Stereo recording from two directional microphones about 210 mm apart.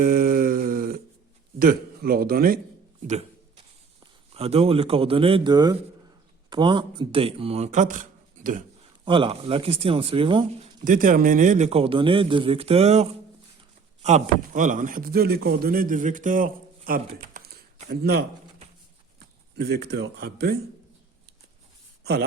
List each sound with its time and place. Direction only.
0.0 s a sound: 40° right (ahead or behind)
1.5 s a man's voice: 40° right (ahead or behind)
4.0 s a man's voice: 30° right (ahead or behind)
9.0 s a man's voice: 25° right (ahead or behind)
10.8 s a man's voice: 40° right (ahead or behind)
19.5 s speech: 50° right (ahead or behind)